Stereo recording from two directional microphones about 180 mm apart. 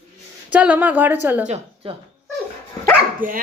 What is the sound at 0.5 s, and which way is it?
Speech, 10° right (ahead or behind).